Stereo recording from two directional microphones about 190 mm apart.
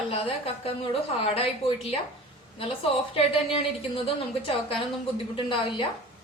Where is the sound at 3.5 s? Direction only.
30° left (ahead or behind).